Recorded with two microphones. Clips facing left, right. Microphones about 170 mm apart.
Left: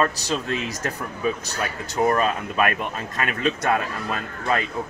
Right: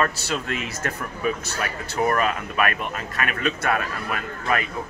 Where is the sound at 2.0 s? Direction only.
25° left (ahead or behind).